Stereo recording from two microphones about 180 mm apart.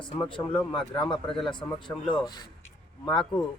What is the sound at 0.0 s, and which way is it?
Speech, 25° left (ahead or behind).